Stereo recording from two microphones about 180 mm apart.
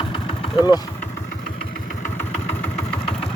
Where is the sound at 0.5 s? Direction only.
20° left (ahead or behind).